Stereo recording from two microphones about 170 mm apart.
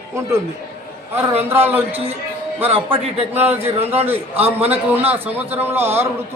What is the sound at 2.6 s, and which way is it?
Speech, 35° right (ahead or behind).